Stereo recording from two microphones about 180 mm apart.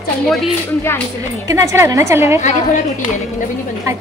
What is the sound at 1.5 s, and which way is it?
Speech, 15° right (ahead or behind).